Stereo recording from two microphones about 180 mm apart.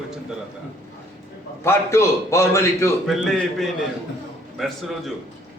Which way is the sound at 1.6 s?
15° left (ahead or behind).